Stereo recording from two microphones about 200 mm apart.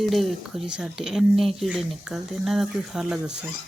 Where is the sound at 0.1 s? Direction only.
Centre (ahead or behind).